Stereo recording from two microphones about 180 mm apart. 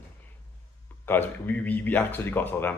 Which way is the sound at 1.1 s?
10° left (ahead or behind).